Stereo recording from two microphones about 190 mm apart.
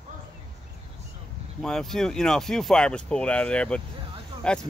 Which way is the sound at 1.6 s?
Centre (ahead or behind).